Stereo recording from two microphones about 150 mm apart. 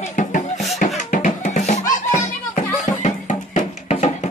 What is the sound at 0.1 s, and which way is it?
Music, 60° left (ahead or behind).